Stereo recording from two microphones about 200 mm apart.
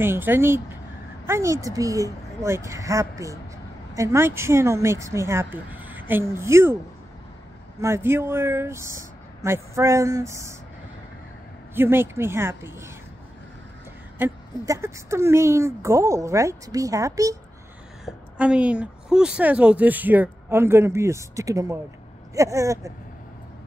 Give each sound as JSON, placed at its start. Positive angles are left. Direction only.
{"t": 0.0, "sound": "a woman's voice", "side_deg": -10}
{"t": 7.8, "sound": "a woman's voice", "side_deg": -10}
{"t": 11.7, "sound": "a woman's voice", "side_deg": -10}
{"t": 14.1, "sound": "a woman's voice", "side_deg": -10}
{"t": 18.0, "sound": "a woman's voice", "side_deg": -5}